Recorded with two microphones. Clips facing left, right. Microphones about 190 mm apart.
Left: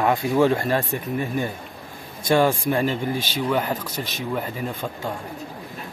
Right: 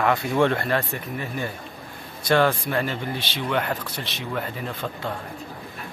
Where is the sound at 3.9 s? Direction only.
45° left (ahead or behind).